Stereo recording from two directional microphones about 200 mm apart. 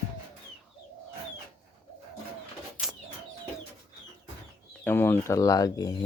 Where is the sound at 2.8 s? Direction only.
5° left (ahead or behind).